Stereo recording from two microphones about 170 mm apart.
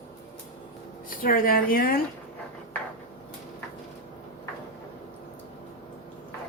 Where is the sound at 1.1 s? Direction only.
55° left (ahead or behind).